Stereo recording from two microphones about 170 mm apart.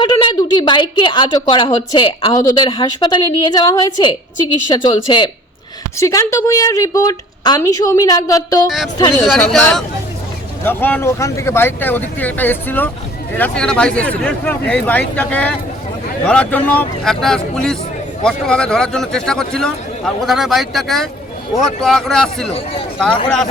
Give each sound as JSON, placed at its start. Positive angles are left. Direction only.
{"t": 0.0, "sound": "a woman's voice", "side_deg": 25}
{"t": 6.0, "sound": "a woman's voice", "side_deg": 20}
{"t": 9.2, "sound": "a man's voice", "side_deg": 0}
{"t": 22.5, "sound": "speech", "side_deg": 35}